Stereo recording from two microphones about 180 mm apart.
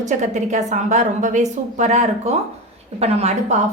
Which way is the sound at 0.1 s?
40° right (ahead or behind).